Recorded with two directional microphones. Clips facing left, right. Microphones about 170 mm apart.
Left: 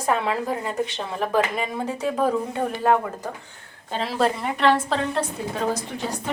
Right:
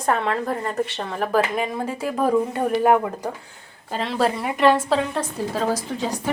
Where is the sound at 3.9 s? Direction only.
Centre (ahead or behind).